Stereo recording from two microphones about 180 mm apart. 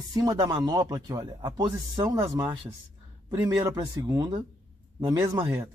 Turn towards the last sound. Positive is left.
turn(degrees=-25)  # may be behind; listen again after turning